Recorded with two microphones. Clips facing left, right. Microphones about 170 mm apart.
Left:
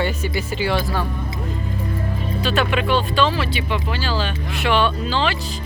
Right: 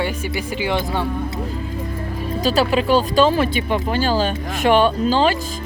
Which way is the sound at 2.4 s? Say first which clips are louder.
Right 4 dB; 35° right (ahead or behind).